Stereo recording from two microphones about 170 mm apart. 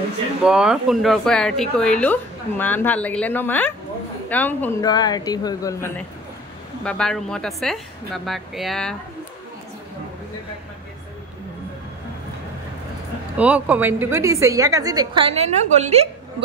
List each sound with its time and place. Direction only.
0.4 s speech: 5° right (ahead or behind)
4.8 s speech: 25° left (ahead or behind)
6.8 s a woman's voice: 5° left (ahead or behind)
13.4 s a woman's voice: 10° right (ahead or behind); by 16.4 s 40° right (ahead or behind)